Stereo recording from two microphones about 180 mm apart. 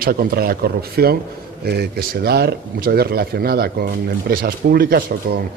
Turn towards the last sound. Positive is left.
turn(degrees=-55)  # may be behind; listen again after turning